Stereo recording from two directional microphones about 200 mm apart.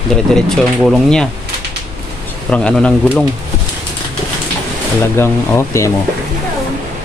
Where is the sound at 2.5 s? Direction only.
5° left (ahead or behind).